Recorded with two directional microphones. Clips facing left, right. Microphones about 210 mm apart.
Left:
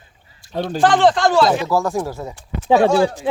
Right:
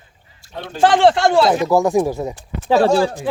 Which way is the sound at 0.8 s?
25° right (ahead or behind).